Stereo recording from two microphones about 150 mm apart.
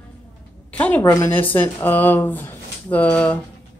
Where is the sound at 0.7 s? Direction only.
10° left (ahead or behind).